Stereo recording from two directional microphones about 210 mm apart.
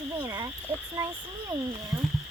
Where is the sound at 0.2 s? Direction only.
15° right (ahead or behind).